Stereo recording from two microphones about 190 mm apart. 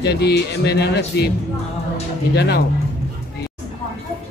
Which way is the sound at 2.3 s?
60° left (ahead or behind).